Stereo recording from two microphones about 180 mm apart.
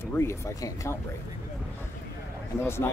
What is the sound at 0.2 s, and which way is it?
Speech, 15° left (ahead or behind).